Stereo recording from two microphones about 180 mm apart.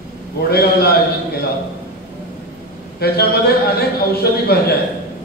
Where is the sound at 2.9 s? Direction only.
60° left (ahead or behind).